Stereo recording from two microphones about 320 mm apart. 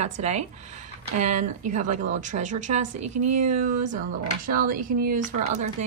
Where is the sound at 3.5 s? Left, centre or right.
Right.